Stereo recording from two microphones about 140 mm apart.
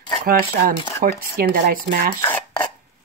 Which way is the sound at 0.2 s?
90° right.